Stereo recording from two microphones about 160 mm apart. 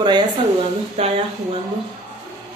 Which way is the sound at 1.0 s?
35° right (ahead or behind).